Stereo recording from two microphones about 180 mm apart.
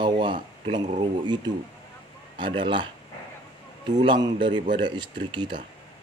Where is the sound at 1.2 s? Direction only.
25° right (ahead or behind).